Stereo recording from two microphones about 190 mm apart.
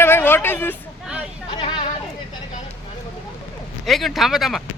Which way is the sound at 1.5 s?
30° left (ahead or behind).